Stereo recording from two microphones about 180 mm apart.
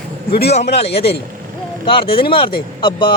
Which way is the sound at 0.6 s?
65° left (ahead or behind).